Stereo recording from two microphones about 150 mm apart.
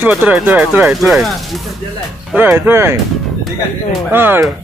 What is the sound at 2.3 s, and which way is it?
Speech, 10° right (ahead or behind).